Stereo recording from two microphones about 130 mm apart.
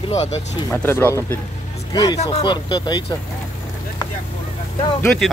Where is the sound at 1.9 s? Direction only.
35° left (ahead or behind).